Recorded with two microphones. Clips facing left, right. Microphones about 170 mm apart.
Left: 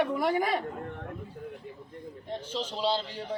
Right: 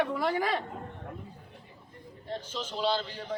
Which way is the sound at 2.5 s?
30° left (ahead or behind).